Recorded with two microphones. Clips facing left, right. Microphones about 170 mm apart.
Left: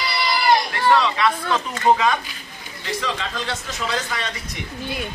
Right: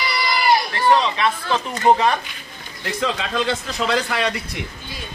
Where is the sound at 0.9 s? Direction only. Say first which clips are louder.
Even; 25° right (ahead or behind).